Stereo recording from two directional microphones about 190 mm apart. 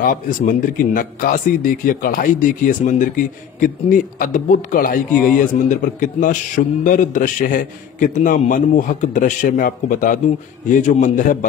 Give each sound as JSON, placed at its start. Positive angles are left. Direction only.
{"t": 0.0, "sound": "a man's voice", "side_deg": 45}